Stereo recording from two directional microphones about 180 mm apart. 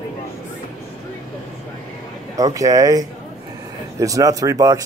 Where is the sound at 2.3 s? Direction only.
20° right (ahead or behind).